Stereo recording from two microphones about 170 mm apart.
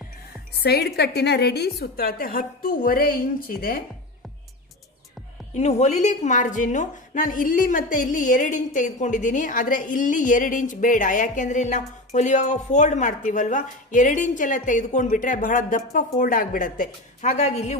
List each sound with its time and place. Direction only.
0.6 s a woman's voice: 70° left (ahead or behind)
5.5 s a woman's voice: 40° left (ahead or behind)